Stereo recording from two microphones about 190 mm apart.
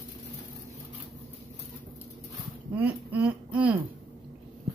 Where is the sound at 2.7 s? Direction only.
10° right (ahead or behind).